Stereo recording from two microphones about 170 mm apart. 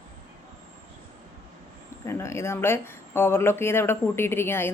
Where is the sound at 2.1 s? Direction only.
15° left (ahead or behind).